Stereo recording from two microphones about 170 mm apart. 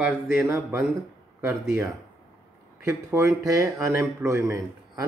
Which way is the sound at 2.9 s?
15° right (ahead or behind).